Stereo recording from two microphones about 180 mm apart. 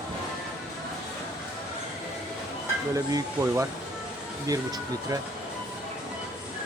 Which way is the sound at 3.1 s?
20° right (ahead or behind).